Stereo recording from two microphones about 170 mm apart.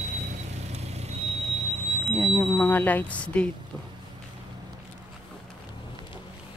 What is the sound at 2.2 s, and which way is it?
Speech, 10° left (ahead or behind).